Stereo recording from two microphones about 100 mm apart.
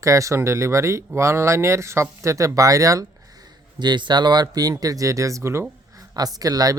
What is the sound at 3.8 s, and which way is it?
Speech, 50° right (ahead or behind).